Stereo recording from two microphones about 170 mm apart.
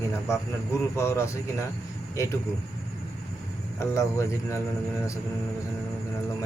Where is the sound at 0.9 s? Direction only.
15° left (ahead or behind).